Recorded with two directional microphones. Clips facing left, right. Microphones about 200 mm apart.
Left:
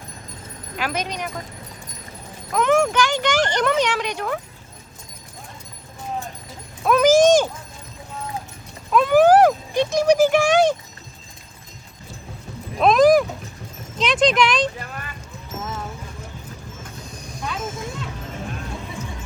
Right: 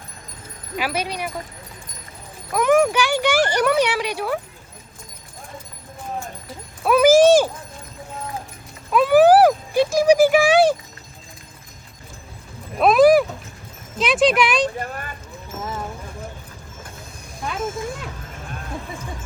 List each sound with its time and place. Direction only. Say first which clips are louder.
0.8 s speech: right 1 dB; 10° right (ahead or behind)
2.5 s speech: right 2 dB; 10° right (ahead or behind)
6.8 s a sound: right 2 dB; 10° right (ahead or behind)
8.9 s speech: right 1 dB; 10° right (ahead or behind)
12.8 s a sound: right 1 dB; 5° right (ahead or behind)
14.0 s speech: right 1 dB; 10° right (ahead or behind)
14.8 s speech: right 5 dB; 45° right (ahead or behind)
17.5 s speech: right 4 dB; 50° right (ahead or behind)